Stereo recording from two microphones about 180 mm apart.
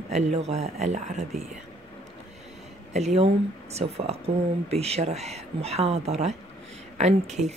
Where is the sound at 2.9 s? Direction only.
40° right (ahead or behind).